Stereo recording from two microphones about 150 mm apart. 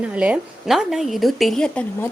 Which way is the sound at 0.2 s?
5° right (ahead or behind).